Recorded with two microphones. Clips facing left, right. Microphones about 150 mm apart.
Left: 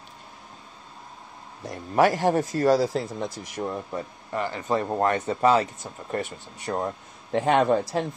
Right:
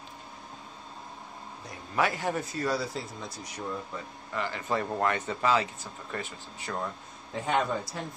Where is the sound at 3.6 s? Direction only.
40° left (ahead or behind).